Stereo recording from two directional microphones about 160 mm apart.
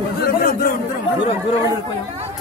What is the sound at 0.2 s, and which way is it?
Chatter, 80° left.